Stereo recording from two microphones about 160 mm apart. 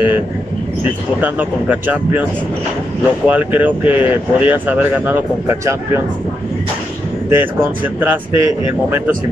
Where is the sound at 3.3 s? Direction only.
10° right (ahead or behind).